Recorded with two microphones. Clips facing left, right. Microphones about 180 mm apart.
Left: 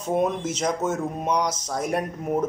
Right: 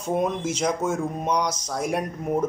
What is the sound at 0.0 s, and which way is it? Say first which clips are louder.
Speech: left 1 dB; 5° left (ahead or behind).